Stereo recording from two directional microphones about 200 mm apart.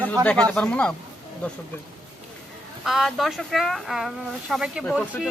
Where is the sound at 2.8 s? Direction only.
Centre (ahead or behind).